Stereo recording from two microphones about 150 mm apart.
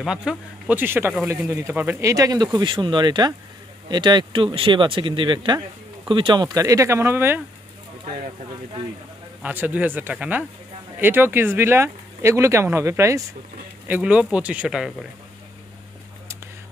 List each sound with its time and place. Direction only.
0.0 s speech: 5° right (ahead or behind)
9.4 s speech: 10° right (ahead or behind)